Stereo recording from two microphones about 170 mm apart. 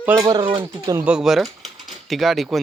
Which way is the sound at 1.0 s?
5° right (ahead or behind).